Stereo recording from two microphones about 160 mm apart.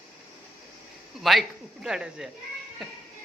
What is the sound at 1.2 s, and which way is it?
A man's voice, centre (ahead or behind).